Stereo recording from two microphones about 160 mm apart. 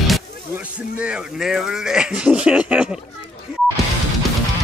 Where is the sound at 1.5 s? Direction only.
5° right (ahead or behind).